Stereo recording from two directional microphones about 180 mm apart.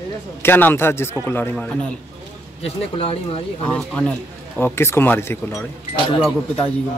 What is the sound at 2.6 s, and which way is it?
Speech, 35° left (ahead or behind).